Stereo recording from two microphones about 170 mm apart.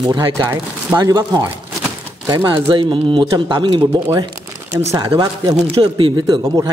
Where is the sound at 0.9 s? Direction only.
20° right (ahead or behind).